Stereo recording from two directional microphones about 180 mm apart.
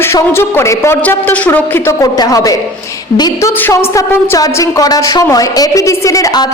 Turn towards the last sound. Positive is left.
turn(degrees=20)  # may be behind; listen again after turning